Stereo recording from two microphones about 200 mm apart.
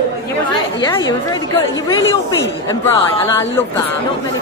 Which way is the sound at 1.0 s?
20° left (ahead or behind).